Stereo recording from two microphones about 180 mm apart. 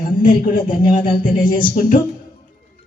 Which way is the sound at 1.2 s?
50° left (ahead or behind).